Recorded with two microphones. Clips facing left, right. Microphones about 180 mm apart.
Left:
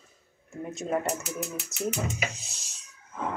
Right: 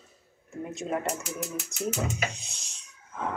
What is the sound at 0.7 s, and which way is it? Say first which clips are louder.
Speech: left 2 dB; centre (ahead or behind).